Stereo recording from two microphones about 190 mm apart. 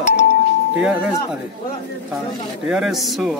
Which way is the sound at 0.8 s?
5° right (ahead or behind).